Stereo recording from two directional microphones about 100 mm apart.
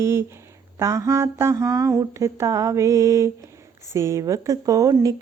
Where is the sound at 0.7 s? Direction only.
30° right (ahead or behind).